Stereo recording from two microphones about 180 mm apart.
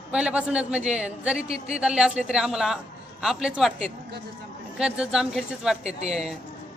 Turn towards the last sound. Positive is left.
turn(degrees=-5)  # may be behind; listen again after turning